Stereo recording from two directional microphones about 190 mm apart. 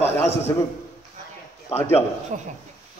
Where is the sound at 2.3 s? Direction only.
45° right (ahead or behind).